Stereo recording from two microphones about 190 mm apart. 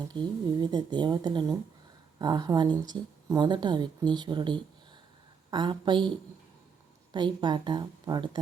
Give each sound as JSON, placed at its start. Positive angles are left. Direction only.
{"t": 0.1, "sound": "speech", "side_deg": -20}
{"t": 7.1, "sound": "speech", "side_deg": -25}